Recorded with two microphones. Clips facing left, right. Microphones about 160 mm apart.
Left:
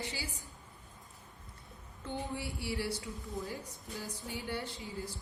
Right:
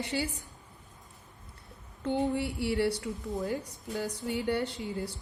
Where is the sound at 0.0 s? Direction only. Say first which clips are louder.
Right 9 dB; 65° right (ahead or behind).